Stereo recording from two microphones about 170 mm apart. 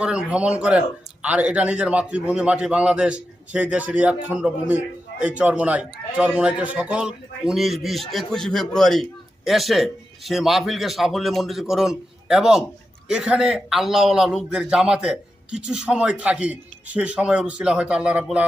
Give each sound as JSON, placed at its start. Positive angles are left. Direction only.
{"t": 0.0, "sound": "a man's voice", "side_deg": -5}